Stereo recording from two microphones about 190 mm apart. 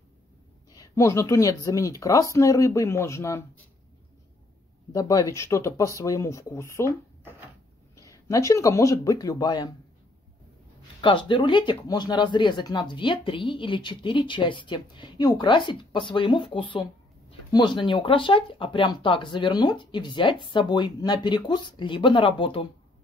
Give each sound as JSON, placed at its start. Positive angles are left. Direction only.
{"t": 0.7, "sound": "speech", "side_deg": 15}
{"t": 4.9, "sound": "speech", "side_deg": 15}
{"t": 11.0, "sound": "speech", "side_deg": 25}